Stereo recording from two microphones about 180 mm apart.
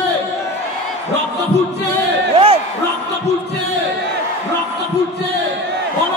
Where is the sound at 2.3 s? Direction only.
30° right (ahead or behind).